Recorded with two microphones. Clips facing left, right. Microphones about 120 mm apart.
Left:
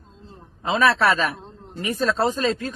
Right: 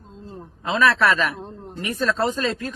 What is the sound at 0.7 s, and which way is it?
Speech, 30° left (ahead or behind).